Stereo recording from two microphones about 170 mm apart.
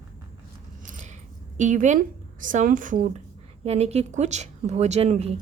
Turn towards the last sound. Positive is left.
turn(degrees=-40)  # may be behind; listen again after turning